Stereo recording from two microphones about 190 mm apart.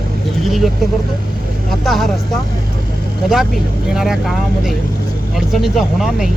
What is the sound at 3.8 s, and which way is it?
Speech, 5° right (ahead or behind).